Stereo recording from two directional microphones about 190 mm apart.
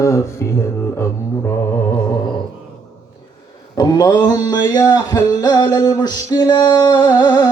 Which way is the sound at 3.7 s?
20° left (ahead or behind).